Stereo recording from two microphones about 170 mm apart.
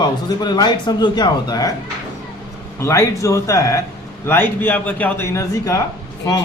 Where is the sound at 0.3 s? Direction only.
25° left (ahead or behind).